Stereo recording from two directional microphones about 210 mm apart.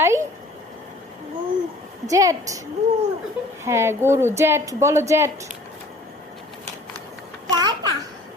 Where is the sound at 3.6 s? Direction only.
10° right (ahead or behind).